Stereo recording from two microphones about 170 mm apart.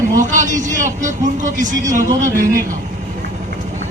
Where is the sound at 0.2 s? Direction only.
45° right (ahead or behind).